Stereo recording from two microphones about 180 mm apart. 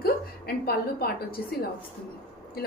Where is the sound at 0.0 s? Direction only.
60° left (ahead or behind).